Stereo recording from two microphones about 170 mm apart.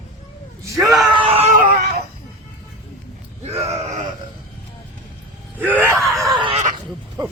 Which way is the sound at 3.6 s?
45° right (ahead or behind).